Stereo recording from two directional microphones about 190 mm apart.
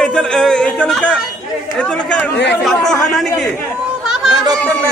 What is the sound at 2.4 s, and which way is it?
Speech, 65° left (ahead or behind).